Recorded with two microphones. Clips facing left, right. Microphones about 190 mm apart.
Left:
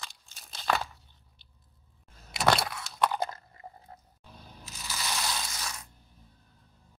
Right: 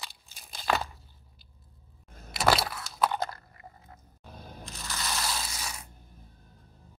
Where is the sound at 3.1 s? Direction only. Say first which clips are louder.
Even; 20° left (ahead or behind).